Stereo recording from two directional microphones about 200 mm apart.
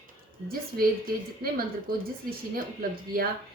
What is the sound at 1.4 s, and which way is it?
Speech, 50° right (ahead or behind).